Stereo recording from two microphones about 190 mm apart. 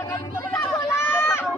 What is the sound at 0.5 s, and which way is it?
Run, 10° left (ahead or behind).